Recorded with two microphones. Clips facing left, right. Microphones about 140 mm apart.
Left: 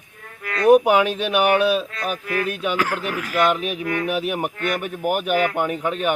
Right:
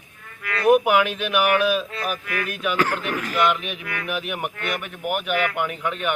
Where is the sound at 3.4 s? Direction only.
35° left (ahead or behind).